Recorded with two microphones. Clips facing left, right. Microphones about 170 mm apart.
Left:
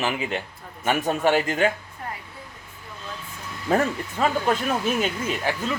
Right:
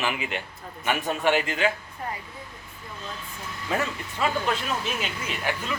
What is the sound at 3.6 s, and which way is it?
A man's voice, 45° left (ahead or behind).